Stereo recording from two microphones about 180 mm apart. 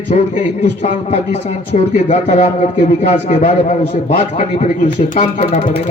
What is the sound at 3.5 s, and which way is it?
Speech, 30° left (ahead or behind).